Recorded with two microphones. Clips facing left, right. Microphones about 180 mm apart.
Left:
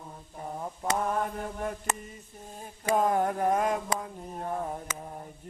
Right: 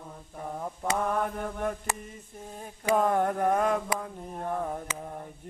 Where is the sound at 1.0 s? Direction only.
55° right (ahead or behind).